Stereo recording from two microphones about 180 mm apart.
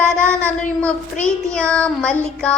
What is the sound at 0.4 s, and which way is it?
Female singing, 10° left (ahead or behind).